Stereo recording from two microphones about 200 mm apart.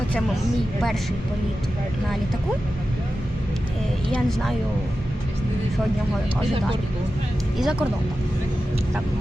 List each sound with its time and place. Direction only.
4.1 s speech: centre (ahead or behind)
7.6 s speech: 5° right (ahead or behind)